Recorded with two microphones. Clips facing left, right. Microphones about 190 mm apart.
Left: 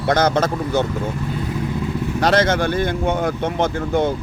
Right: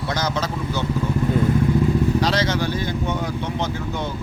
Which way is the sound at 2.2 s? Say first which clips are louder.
Left 4 dB; 50° left (ahead or behind).